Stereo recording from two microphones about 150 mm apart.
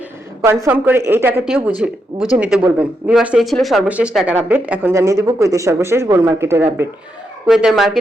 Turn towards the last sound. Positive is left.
turn(degrees=0)  # may be behind; listen again after turning